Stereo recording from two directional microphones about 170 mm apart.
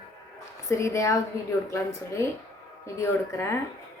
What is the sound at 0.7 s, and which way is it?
A woman's voice, 20° left (ahead or behind).